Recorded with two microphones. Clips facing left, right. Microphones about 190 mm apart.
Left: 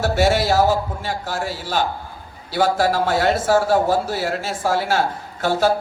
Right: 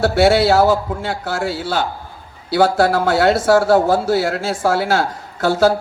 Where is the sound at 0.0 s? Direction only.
75° right (ahead or behind).